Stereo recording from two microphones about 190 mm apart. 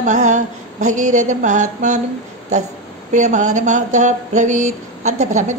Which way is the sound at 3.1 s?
40° right (ahead or behind).